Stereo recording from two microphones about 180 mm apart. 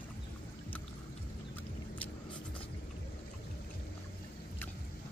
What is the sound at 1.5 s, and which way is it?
Vehicle, 10° left (ahead or behind).